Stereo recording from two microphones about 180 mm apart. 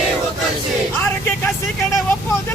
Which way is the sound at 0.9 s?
10° left (ahead or behind).